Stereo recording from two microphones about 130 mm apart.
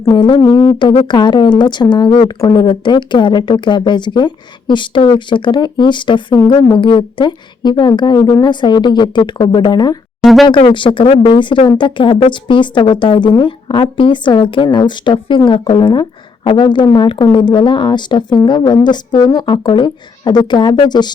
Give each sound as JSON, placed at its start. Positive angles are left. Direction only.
{"t": 0.1, "sound": "speech", "side_deg": 35}